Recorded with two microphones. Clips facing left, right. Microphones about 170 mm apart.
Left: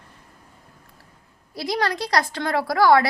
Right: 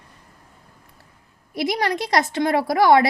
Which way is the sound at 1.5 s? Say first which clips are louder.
Right 2 dB; 20° right (ahead or behind).